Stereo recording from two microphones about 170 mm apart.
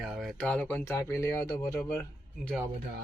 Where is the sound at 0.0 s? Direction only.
Centre (ahead or behind).